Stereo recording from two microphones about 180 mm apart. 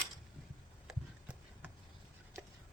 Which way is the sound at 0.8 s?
5° right (ahead or behind).